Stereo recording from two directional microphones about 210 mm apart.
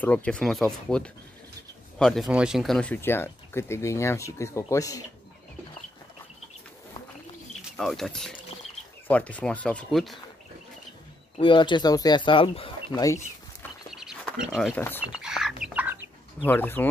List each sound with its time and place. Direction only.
0.0 s speech: 5° left (ahead or behind)
7.7 s speech: centre (ahead or behind)
11.3 s speech: 25° left (ahead or behind)
13.8 s a sound: centre (ahead or behind)
15.2 s chicken: centre (ahead or behind)
16.4 s speech: 10° left (ahead or behind)